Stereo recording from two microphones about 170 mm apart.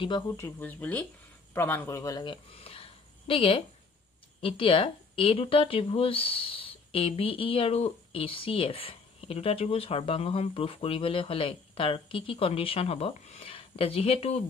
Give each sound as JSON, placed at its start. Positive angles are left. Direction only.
{"t": 0.3, "sound": "a woman's voice", "side_deg": 10}